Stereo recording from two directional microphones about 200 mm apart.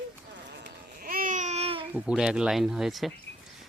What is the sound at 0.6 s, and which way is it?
Babbling, 45° right (ahead or behind).